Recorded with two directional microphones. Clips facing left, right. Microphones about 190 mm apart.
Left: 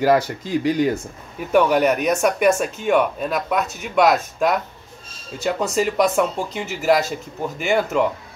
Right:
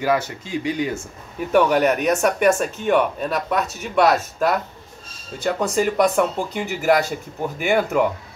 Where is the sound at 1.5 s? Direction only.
5° left (ahead or behind).